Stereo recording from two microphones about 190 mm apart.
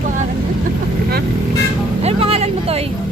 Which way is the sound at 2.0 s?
30° right (ahead or behind).